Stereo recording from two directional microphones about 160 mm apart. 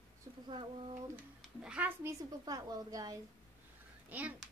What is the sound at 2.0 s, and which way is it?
A woman's voice, 20° right (ahead or behind).